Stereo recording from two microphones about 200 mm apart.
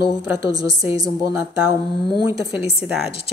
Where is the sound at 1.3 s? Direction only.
5° right (ahead or behind).